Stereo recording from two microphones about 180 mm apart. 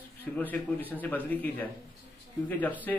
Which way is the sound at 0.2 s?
10° left (ahead or behind).